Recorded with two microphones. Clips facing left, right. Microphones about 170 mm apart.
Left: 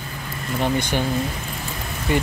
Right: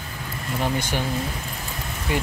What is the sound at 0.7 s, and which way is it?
Speech, 5° right (ahead or behind).